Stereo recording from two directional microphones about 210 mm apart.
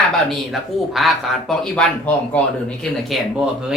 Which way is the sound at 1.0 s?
Centre (ahead or behind).